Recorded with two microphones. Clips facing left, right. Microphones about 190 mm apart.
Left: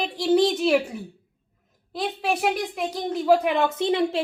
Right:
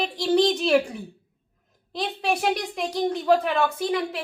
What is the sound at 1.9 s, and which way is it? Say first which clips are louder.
A woman's voice: even; 5° left (ahead or behind).